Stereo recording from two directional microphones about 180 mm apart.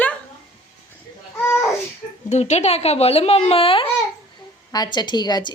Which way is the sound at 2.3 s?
40° left (ahead or behind).